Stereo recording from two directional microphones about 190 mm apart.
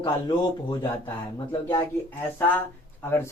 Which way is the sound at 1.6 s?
10° left (ahead or behind).